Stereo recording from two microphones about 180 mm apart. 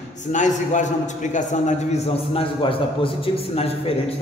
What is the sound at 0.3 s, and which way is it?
A man's voice, 40° left (ahead or behind).